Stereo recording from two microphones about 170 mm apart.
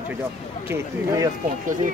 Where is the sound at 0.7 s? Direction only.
20° right (ahead or behind).